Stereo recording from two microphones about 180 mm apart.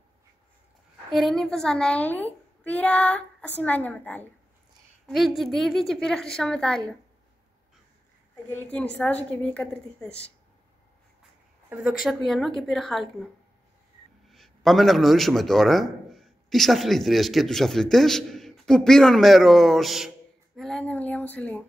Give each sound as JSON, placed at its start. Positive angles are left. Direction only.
{"t": 1.1, "sound": "a woman's voice", "side_deg": 0}
{"t": 8.5, "sound": "a woman's voice", "side_deg": 10}
{"t": 11.7, "sound": "a woman's voice", "side_deg": -5}
{"t": 20.5, "sound": "a sound", "side_deg": 5}